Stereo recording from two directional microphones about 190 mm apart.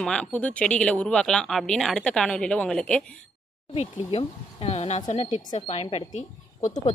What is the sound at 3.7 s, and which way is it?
Speech, 30° left (ahead or behind).